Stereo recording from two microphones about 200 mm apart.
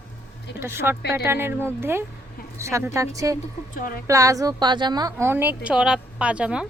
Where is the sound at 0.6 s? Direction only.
10° right (ahead or behind).